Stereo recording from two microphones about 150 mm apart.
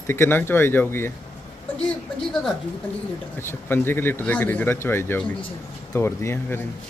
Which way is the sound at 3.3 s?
15° left (ahead or behind).